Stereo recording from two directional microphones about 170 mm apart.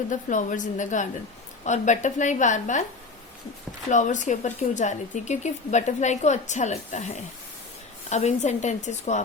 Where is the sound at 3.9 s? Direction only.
45° left (ahead or behind).